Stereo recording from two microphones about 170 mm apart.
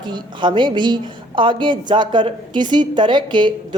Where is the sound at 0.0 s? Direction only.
25° right (ahead or behind).